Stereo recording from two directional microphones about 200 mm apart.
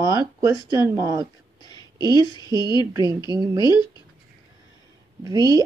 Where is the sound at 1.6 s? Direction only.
20° left (ahead or behind).